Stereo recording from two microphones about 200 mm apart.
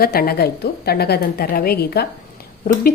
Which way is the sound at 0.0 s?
50° left (ahead or behind).